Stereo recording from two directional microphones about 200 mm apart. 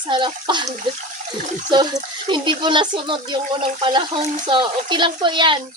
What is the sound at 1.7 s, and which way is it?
Speech, 20° right (ahead or behind).